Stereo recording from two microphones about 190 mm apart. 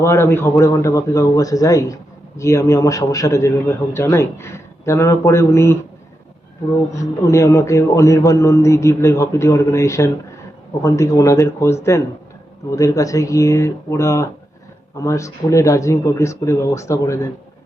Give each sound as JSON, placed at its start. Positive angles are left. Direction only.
{"t": 0.0, "sound": "speech", "side_deg": 15}
{"t": 6.9, "sound": "speech", "side_deg": 15}